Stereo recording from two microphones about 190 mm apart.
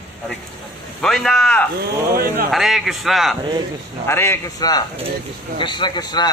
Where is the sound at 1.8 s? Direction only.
55° right (ahead or behind).